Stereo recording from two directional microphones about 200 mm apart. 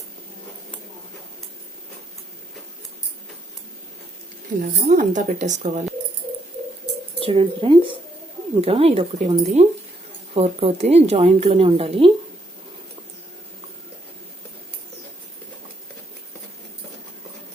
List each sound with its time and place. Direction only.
4.6 s a woman's voice: 40° right (ahead or behind)
7.2 s a woman's voice: 30° right (ahead or behind)